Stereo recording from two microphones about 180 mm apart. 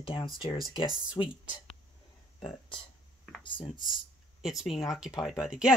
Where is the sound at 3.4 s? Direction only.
25° left (ahead or behind).